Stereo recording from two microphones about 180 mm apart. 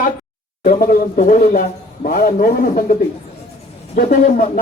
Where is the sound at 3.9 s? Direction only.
55° left (ahead or behind).